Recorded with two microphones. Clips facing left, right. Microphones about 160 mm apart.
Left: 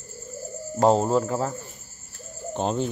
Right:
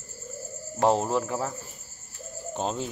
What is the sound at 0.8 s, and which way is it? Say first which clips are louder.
Speech: left 4 dB; 30° left (ahead or behind).